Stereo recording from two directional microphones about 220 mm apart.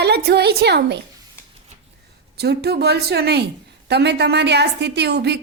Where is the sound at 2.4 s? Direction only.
50° right (ahead or behind).